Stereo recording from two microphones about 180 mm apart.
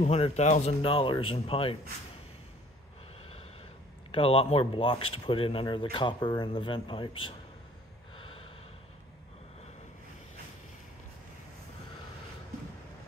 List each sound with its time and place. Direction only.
0.0 s speech: 35° left (ahead or behind)
4.1 s speech: 30° left (ahead or behind)
8.2 s snort: 30° left (ahead or behind)